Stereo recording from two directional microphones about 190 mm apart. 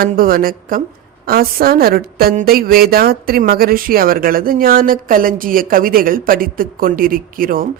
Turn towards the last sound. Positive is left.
turn(degrees=-50)  # may be behind; listen again after turning